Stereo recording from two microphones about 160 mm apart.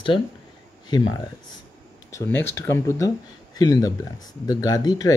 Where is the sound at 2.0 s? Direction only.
15° left (ahead or behind).